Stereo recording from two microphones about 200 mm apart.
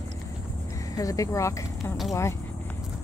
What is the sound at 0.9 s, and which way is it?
Speech, 15° left (ahead or behind).